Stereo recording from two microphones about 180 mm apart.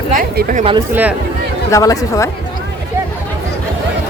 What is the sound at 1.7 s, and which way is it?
Speech, 20° left (ahead or behind).